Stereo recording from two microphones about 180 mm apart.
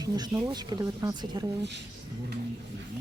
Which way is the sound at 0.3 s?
20° right (ahead or behind).